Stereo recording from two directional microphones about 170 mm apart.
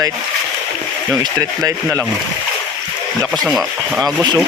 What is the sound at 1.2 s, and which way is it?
Speech, 20° right (ahead or behind).